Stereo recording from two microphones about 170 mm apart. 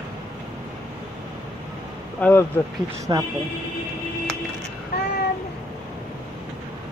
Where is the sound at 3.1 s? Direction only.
25° right (ahead or behind).